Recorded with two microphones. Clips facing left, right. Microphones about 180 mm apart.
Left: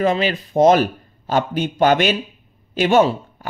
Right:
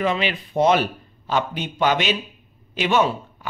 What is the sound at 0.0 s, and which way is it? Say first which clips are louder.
Speech: left 4 dB; 40° left (ahead or behind).